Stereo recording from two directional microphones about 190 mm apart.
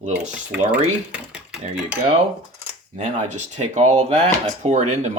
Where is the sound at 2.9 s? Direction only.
40° right (ahead or behind).